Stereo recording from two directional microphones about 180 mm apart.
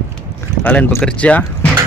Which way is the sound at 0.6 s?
10° left (ahead or behind).